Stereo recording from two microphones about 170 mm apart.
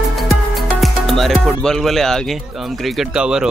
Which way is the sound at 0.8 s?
Centre (ahead or behind).